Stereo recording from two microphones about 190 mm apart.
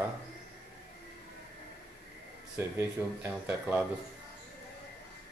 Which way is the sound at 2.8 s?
10° right (ahead or behind).